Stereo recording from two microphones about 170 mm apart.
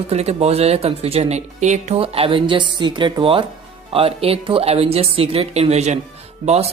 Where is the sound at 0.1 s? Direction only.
40° right (ahead or behind).